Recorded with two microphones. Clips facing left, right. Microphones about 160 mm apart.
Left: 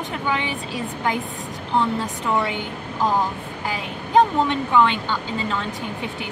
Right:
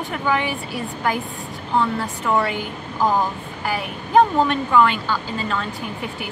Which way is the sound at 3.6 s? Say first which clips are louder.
Right 3 dB; 20° left (ahead or behind).